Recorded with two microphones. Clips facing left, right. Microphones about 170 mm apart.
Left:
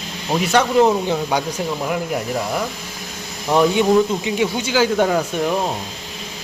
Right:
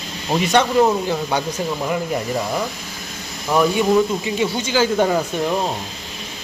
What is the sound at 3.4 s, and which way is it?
Speech, 20° left (ahead or behind).